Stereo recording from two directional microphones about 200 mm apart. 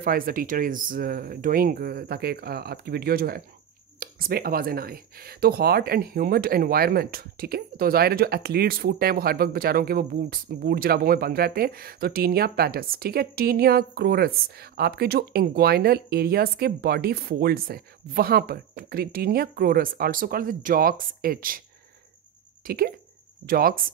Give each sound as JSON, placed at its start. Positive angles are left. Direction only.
{"t": 0.0, "sound": "speech", "side_deg": -45}
{"t": 22.7, "sound": "speech", "side_deg": -50}